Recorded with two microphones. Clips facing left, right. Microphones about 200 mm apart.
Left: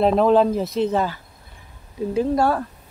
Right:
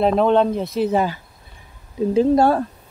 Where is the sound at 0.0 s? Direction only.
Centre (ahead or behind); by 1.2 s 15° right (ahead or behind).